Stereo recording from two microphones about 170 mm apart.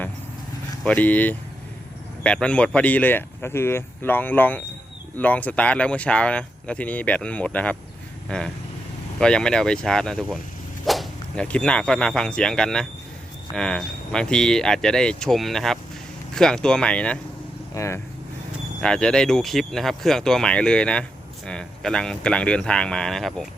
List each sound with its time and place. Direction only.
0.9 s speech: 10° left (ahead or behind)
18.8 s speech: 5° left (ahead or behind)